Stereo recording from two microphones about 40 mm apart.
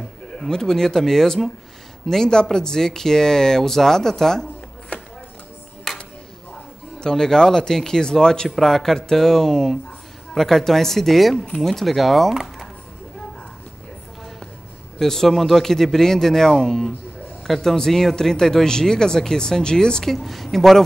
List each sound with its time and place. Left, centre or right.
0.4 s speech: centre
4.9 s chopping: left
5.9 s a sound: centre
7.0 s speech: centre
8.5 s speech: centre
11.8 s speech: centre
15.0 s speech: centre
20.1 s speech: centre